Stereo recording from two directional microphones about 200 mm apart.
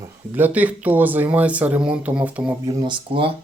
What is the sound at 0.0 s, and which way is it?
Speech, 10° right (ahead or behind).